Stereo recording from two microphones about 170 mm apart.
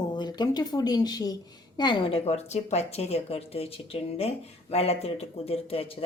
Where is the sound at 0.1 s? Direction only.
25° left (ahead or behind).